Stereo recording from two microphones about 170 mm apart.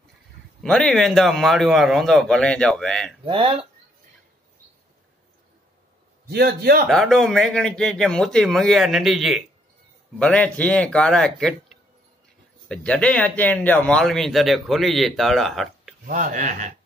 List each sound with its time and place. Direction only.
0.6 s speech: 5° left (ahead or behind)
3.3 s speech: 30° right (ahead or behind)
6.3 s a man's voice: 70° right (ahead or behind)
6.9 s speech: centre (ahead or behind)
16.1 s speech: 50° right (ahead or behind)